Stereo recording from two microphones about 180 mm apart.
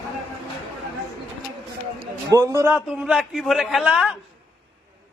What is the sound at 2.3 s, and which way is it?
Speech, 15° right (ahead or behind).